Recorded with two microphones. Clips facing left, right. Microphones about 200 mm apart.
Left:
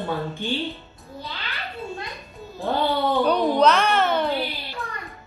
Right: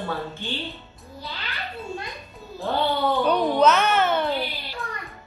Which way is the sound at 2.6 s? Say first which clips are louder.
Left 1 dB; centre (ahead or behind).